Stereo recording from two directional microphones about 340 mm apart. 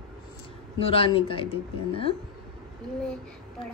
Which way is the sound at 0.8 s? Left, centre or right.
Centre.